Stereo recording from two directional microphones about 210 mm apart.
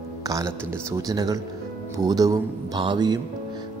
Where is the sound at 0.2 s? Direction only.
15° right (ahead or behind).